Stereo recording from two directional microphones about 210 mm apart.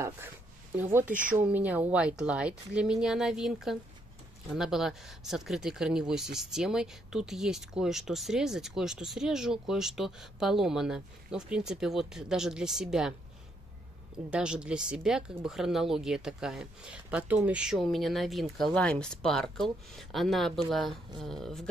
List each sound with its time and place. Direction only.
1.0 s speech: 40° right (ahead or behind)
1.3 s speech: 5° right (ahead or behind)
14.3 s speech: 5° right (ahead or behind)